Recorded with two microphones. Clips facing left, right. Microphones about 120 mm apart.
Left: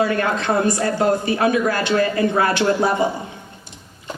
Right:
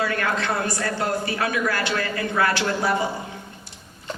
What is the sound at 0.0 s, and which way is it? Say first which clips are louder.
A woman's voice: left 5 dB; 25° left (ahead or behind).